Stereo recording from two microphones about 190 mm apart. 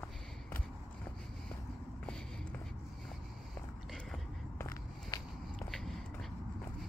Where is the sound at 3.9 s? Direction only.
5° left (ahead or behind).